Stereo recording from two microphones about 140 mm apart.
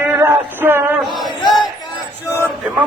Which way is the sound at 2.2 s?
20° left (ahead or behind).